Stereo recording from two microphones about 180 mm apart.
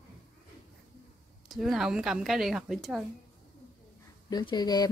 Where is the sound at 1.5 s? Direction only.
Centre (ahead or behind).